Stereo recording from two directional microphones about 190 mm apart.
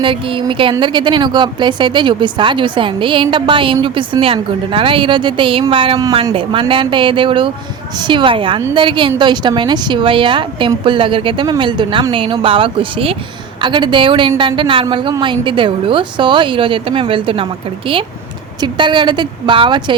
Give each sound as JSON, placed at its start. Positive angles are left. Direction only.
{"t": 0.0, "sound": "a woman's voice", "side_deg": -25}